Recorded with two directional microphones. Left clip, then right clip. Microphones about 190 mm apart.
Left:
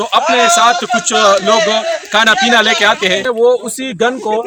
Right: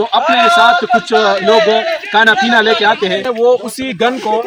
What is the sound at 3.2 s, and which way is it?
Speech, 20° left (ahead or behind).